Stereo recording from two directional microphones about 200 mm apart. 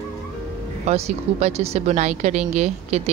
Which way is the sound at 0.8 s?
30° right (ahead or behind).